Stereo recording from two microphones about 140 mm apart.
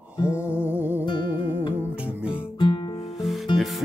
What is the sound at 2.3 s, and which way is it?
Guitar, 35° left (ahead or behind).